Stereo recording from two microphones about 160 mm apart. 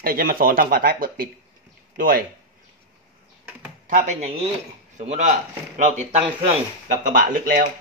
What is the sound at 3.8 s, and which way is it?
A man's voice, 50° right (ahead or behind).